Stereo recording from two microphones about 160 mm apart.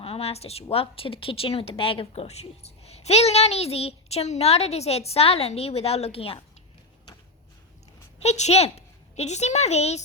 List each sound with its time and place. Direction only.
0.0 s a woman's voice: 40° left (ahead or behind)
8.2 s a woman's voice: 45° left (ahead or behind)